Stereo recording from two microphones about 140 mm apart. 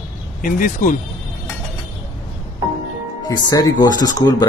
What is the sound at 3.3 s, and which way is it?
Speech, 30° left (ahead or behind).